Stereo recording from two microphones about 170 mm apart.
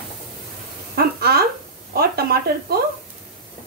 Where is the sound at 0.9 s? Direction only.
65° right (ahead or behind).